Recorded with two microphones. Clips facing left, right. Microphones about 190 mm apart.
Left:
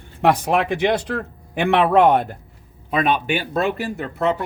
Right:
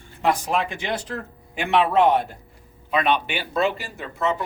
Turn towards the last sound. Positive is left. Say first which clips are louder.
# left 4 dB
turn(degrees=60)  # may be behind; listen again after turning